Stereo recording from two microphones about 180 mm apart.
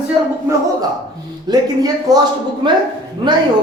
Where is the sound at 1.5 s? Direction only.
20° right (ahead or behind).